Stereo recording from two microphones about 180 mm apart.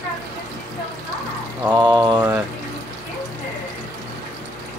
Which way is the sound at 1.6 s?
20° right (ahead or behind).